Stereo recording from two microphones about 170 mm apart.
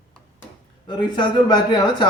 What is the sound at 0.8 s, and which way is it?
Speech, 25° left (ahead or behind).